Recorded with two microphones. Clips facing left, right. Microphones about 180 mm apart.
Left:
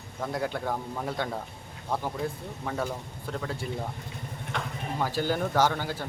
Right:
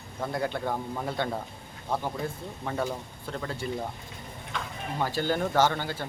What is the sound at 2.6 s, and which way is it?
Speech, 5° right (ahead or behind).